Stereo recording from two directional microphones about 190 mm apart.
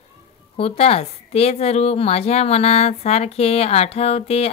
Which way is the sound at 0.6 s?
30° left (ahead or behind).